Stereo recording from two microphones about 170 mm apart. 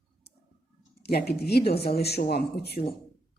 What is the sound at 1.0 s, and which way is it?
A woman's voice, 70° left (ahead or behind).